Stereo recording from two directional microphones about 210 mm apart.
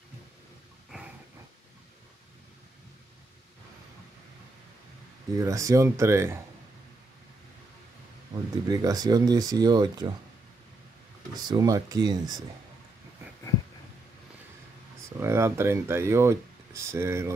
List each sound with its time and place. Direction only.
0.9 s dog: 5° right (ahead or behind)
5.4 s speech: 15° right (ahead or behind)
8.6 s speech: 20° right (ahead or behind)
11.4 s speech: 20° right (ahead or behind)
15.1 s speech: 10° right (ahead or behind)